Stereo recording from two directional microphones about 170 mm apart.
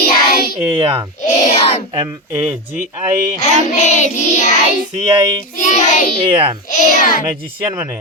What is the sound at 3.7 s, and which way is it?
Child singing, 40° left (ahead or behind).